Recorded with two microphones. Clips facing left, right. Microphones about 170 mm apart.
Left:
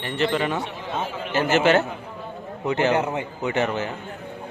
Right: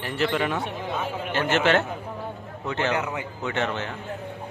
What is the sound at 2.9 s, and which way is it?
Speech, 30° left (ahead or behind).